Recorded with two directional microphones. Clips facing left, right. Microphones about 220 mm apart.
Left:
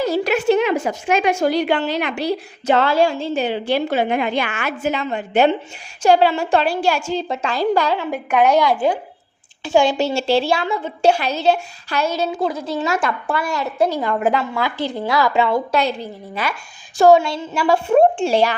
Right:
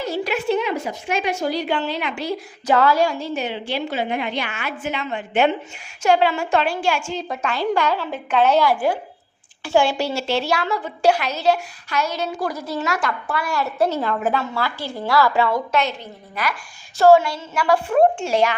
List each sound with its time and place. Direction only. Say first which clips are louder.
0.3 s a woman's voice: left 5 dB; 80° left
1.4 s a woman's voice: left 5 dB; 65° left (ahead or behind)
2.6 s a woman's voice: left 2 dB; 25° left (ahead or behind); by 4.7 s 85° left
4.8 s a woman's voice: left 5 dB; 40° left (ahead or behind)
7.9 s a woman's voice: left 2 dB; 15° left (ahead or behind); by 16.6 s 30° left (ahead or behind)
17.0 s a woman's voice: left 1 dB; 15° left (ahead or behind)